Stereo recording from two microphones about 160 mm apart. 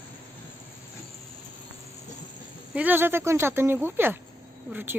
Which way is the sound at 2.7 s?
10° right (ahead or behind).